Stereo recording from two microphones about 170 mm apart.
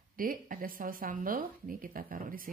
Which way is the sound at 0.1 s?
55° right (ahead or behind).